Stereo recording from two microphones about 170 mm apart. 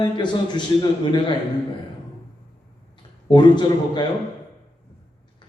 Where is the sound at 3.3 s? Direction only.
25° left (ahead or behind).